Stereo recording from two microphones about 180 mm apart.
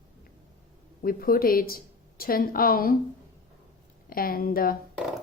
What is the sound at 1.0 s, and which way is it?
A woman's voice, 55° left (ahead or behind).